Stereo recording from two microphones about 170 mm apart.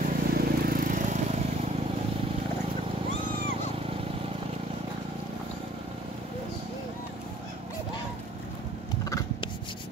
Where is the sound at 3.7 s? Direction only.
35° right (ahead or behind).